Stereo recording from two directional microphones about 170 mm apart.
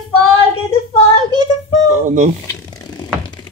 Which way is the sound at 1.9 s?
45° right (ahead or behind).